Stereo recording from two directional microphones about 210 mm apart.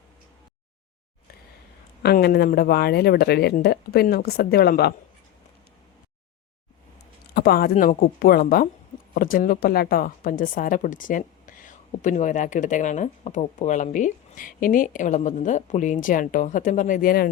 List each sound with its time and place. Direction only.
2.0 s speech: 50° left (ahead or behind)
7.3 s a woman's voice: 45° left (ahead or behind)